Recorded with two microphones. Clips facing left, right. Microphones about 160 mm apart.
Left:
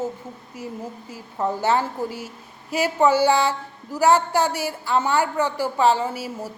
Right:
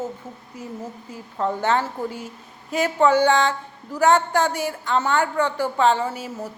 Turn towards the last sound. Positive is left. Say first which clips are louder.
# even
turn(degrees=10)  # may be behind; listen again after turning